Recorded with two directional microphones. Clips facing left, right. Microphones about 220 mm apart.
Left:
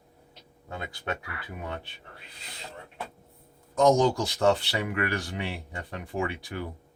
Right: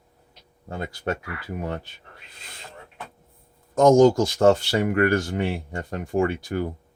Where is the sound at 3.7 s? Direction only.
45° right (ahead or behind).